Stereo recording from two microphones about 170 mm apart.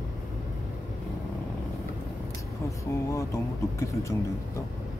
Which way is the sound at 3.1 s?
15° left (ahead or behind).